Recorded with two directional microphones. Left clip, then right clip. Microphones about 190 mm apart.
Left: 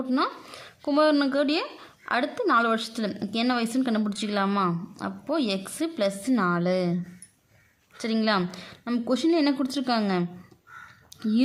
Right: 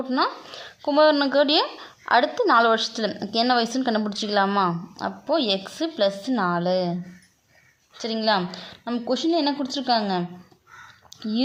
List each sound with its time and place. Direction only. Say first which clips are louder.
0.1 s a woman's voice: right 3 dB; 20° left (ahead or behind)
8.0 s a woman's voice: right 3 dB; 30° left (ahead or behind)